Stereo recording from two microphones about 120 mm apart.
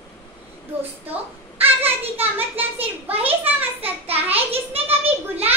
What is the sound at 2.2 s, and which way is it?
Speech, 15° right (ahead or behind).